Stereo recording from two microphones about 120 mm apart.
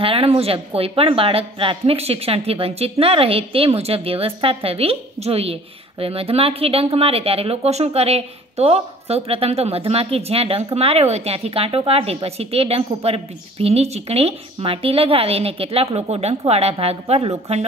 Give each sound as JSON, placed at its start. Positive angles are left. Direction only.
{"t": 0.0, "sound": "a woman's voice", "side_deg": -50}